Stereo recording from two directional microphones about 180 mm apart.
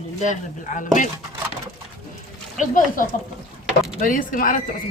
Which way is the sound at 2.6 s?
45° left (ahead or behind).